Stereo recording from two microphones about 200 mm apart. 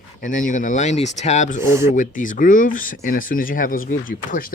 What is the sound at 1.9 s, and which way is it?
Speech, 40° left (ahead or behind).